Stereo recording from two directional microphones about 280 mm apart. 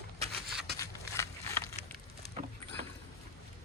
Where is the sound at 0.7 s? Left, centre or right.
Centre.